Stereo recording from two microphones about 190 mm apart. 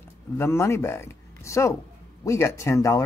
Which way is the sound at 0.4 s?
15° left (ahead or behind).